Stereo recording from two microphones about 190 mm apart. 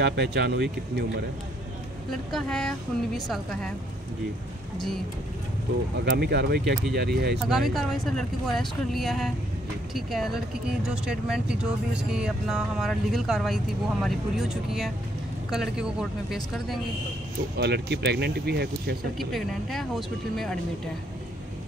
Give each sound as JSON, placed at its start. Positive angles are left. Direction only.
{"t": 0.0, "sound": "speech", "side_deg": -65}
{"t": 2.3, "sound": "speech", "side_deg": 5}
{"t": 4.7, "sound": "speech", "side_deg": 0}
{"t": 6.1, "sound": "speech", "side_deg": -55}
{"t": 7.4, "sound": "speech", "side_deg": 0}
{"t": 17.6, "sound": "speech", "side_deg": -60}
{"t": 19.1, "sound": "speech", "side_deg": 0}